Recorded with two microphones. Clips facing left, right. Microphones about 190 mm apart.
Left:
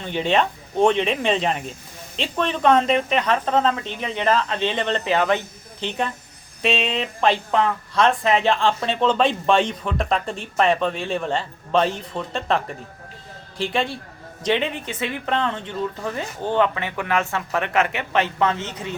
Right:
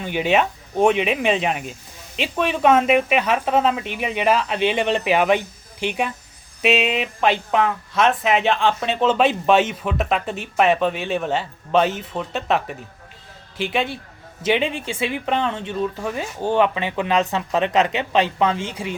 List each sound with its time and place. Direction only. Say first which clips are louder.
0.0 s speech: right 1 dB; 10° right (ahead or behind)